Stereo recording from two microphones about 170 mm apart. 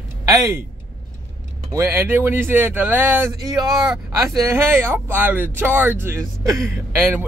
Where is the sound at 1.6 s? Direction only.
15° right (ahead or behind).